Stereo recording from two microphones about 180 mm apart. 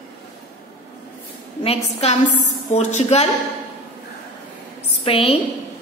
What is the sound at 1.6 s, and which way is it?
A woman's voice, 35° left (ahead or behind).